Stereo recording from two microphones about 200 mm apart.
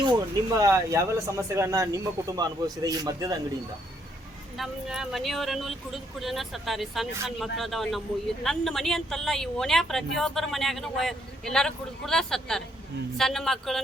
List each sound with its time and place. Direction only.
0.5 s speech: 15° right (ahead or behind)
4.5 s speech: centre (ahead or behind)